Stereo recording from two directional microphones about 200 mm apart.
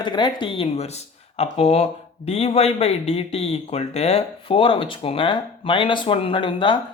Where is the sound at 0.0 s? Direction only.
20° left (ahead or behind).